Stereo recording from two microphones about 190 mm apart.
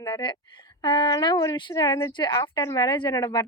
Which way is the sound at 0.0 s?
25° left (ahead or behind).